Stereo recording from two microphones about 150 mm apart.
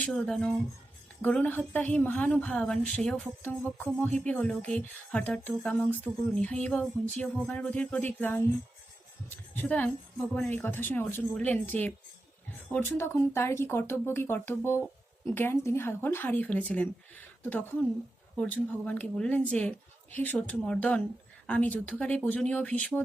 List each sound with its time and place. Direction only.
0.0 s a woman's voice: 5° left (ahead or behind)
18.3 s a woman's voice: 10° left (ahead or behind)